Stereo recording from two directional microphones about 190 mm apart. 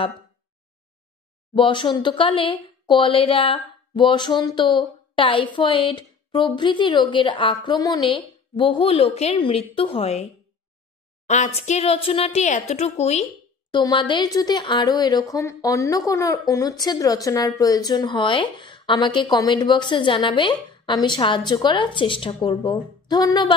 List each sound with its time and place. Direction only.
1.5 s speech: 25° left (ahead or behind)
11.2 s speech: 40° left (ahead or behind); by 23.5 s 20° left (ahead or behind)